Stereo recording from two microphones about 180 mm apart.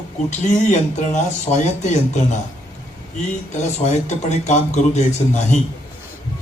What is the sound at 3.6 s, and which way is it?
A man's voice, 40° left (ahead or behind).